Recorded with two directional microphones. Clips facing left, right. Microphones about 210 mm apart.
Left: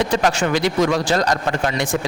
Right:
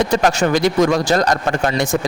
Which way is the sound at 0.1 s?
45° right (ahead or behind).